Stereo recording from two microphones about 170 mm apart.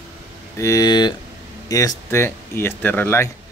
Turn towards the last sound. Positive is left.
turn(degrees=15)  # may be behind; listen again after turning